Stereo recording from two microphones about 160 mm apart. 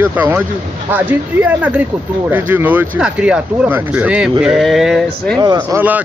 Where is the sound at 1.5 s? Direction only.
10° right (ahead or behind).